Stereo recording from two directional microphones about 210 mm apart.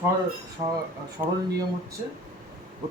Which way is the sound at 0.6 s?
25° right (ahead or behind).